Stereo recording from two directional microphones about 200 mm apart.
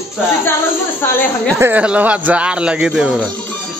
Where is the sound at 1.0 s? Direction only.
10° left (ahead or behind).